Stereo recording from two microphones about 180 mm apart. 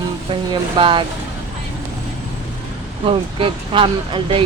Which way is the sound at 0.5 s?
30° right (ahead or behind).